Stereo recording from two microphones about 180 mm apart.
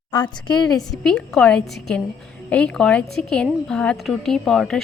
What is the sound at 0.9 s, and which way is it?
A woman's voice, 5° left (ahead or behind).